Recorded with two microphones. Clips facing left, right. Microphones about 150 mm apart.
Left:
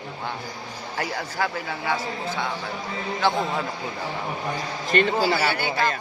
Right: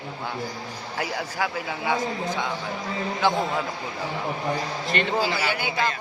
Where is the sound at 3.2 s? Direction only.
15° right (ahead or behind).